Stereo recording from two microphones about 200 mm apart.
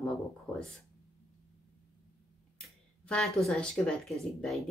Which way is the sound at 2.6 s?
Centre (ahead or behind).